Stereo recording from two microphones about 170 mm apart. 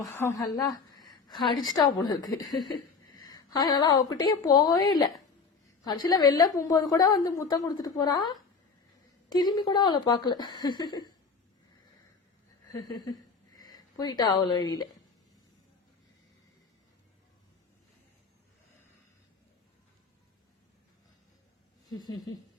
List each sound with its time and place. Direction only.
0.0 s a woman's voice: 20° left (ahead or behind)
13.5 s speech: 25° left (ahead or behind)
21.8 s a woman's voice: 25° left (ahead or behind)